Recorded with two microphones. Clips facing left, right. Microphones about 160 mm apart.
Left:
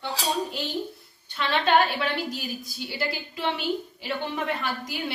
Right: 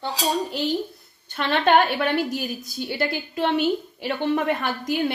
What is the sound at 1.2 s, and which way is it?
A woman's voice, 50° right (ahead or behind).